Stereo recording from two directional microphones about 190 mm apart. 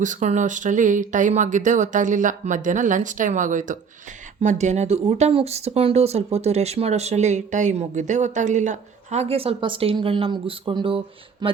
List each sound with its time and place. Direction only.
0.0 s speech: 40° right (ahead or behind)